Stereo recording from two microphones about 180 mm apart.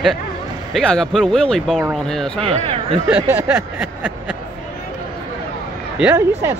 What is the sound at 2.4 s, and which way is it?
Speech, 30° right (ahead or behind).